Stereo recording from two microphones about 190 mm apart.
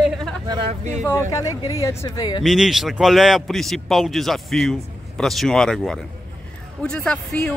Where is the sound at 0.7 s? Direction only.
35° right (ahead or behind).